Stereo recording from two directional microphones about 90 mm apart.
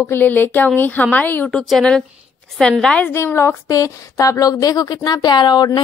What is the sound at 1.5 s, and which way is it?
A woman's voice, 10° left (ahead or behind).